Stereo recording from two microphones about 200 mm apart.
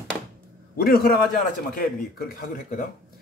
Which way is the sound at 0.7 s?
50° left (ahead or behind).